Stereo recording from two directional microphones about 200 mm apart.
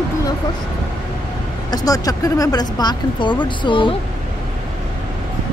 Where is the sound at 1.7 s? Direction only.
20° left (ahead or behind).